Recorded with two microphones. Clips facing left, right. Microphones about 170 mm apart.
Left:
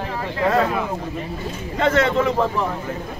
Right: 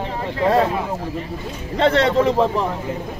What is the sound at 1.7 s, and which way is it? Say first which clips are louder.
Speech: right 2 dB; 35° right (ahead or behind).